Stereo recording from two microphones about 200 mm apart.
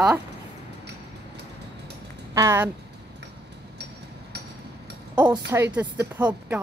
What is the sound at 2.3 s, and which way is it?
Speech, 15° right (ahead or behind).